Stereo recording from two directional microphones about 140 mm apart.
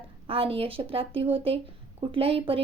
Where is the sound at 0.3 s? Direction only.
40° right (ahead or behind).